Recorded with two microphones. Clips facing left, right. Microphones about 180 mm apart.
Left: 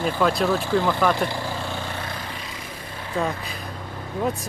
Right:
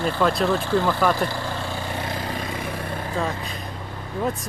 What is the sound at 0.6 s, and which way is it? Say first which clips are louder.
Speech: even; 15° left (ahead or behind).